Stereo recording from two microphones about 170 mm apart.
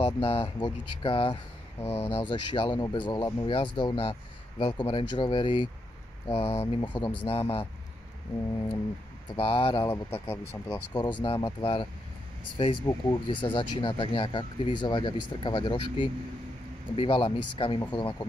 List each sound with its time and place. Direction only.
0.0 s speech: 35° left (ahead or behind)
9.3 s speech: 30° left (ahead or behind)